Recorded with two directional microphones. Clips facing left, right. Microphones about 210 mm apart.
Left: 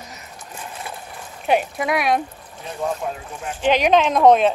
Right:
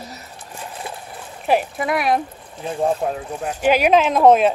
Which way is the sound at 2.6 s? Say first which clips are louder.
Right 5 dB; 30° right (ahead or behind).